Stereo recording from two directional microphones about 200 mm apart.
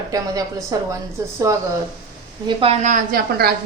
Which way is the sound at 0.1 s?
15° right (ahead or behind).